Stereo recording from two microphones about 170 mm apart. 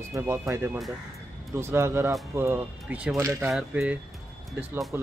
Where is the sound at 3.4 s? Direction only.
5° right (ahead or behind).